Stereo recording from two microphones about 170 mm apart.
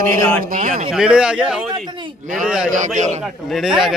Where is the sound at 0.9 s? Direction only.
5° right (ahead or behind).